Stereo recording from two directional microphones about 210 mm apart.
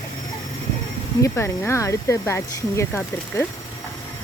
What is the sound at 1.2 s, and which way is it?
Speech, 15° left (ahead or behind).